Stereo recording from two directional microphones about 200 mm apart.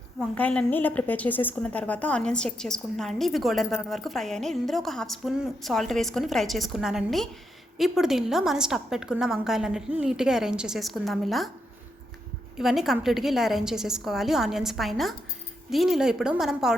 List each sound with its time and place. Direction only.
0.2 s a woman's voice: 5° left (ahead or behind)
12.5 s a woman's voice: centre (ahead or behind)